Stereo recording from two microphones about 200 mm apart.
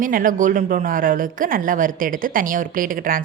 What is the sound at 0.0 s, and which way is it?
A woman's voice, 45° right (ahead or behind).